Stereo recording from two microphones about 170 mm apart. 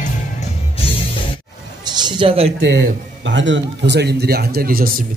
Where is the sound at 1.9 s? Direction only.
25° right (ahead or behind).